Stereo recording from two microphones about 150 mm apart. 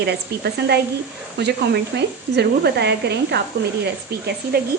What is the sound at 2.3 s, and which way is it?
Speech, 90° right.